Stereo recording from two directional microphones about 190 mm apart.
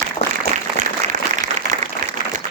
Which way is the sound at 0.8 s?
40° right (ahead or behind).